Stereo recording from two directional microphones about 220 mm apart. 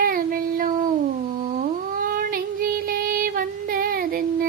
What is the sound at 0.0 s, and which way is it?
Child singing, 40° right (ahead or behind).